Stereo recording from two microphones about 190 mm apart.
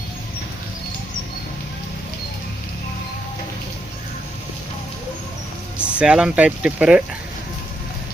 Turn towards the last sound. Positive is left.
turn(degrees=-5)  # may be behind; listen again after turning